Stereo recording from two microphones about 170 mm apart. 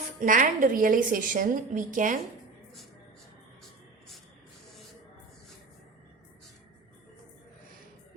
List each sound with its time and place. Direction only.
0.2 s a woman's voice: 50° right (ahead or behind)